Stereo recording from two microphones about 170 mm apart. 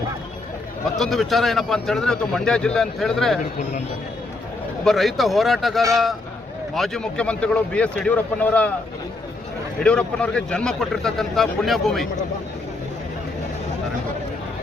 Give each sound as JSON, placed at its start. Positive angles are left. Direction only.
{"t": 0.9, "sound": "speech", "side_deg": 0}
{"t": 4.9, "sound": "speech", "side_deg": 0}
{"t": 9.8, "sound": "speech", "side_deg": 5}